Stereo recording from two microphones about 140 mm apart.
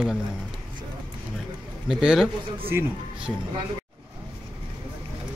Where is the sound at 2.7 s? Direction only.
15° right (ahead or behind).